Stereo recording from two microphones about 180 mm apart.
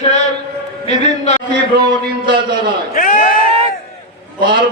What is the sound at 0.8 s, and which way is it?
Speech, 40° left (ahead or behind).